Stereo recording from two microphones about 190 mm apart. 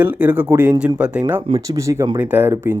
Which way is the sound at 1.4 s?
30° right (ahead or behind).